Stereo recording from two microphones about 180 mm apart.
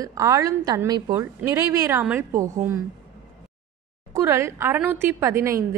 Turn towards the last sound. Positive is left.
turn(degrees=-15)  # may be behind; listen again after turning